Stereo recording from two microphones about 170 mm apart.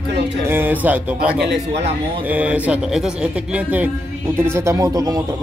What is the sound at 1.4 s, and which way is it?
Speech, 85° right.